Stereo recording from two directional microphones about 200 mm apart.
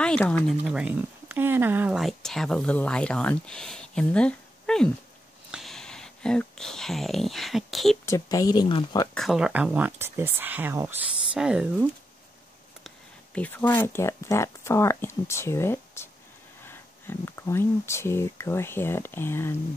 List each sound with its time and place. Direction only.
0.0 s speech: 5° left (ahead or behind)
8.0 s speech: 15° left (ahead or behind)
9.1 s speech: centre (ahead or behind)
12.8 s speech: 5° left (ahead or behind)